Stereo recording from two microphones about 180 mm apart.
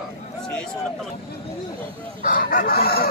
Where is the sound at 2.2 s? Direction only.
50° left (ahead or behind).